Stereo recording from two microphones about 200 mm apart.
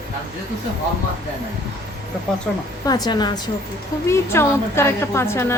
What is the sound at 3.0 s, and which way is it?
A woman's voice, 20° left (ahead or behind).